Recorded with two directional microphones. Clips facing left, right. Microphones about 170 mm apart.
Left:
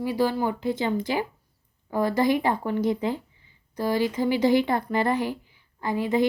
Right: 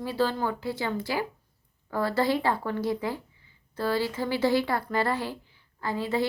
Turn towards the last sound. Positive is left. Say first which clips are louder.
# left 5 dB
turn(degrees=15)  # may be behind; listen again after turning